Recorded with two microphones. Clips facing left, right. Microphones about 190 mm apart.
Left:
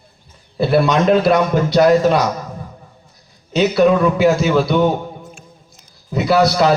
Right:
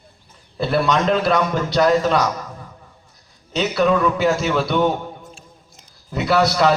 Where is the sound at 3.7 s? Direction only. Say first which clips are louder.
Left 3 dB; 5° left (ahead or behind).